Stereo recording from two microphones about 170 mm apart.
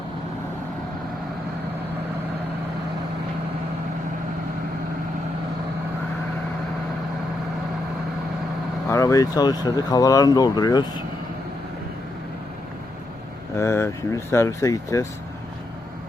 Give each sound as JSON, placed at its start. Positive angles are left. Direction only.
{"t": 8.9, "sound": "speech", "side_deg": 20}
{"t": 13.6, "sound": "speech", "side_deg": 15}